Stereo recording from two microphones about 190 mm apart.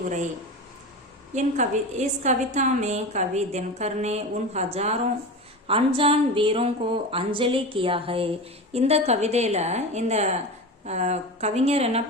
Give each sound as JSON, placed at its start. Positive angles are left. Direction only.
{"t": 1.3, "sound": "a woman's voice", "side_deg": -40}